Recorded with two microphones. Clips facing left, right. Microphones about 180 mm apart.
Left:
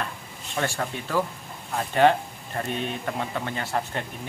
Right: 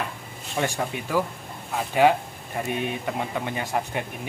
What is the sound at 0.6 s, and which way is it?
Speech, 15° right (ahead or behind).